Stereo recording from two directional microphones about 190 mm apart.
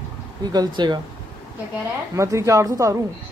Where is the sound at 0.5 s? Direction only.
20° right (ahead or behind).